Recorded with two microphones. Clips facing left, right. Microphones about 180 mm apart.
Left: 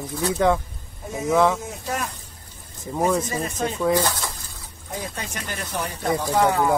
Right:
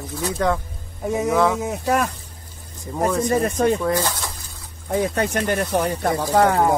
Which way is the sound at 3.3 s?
55° right (ahead or behind).